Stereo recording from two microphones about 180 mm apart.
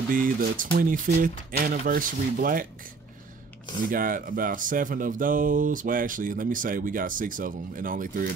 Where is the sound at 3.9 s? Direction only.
50° right (ahead or behind).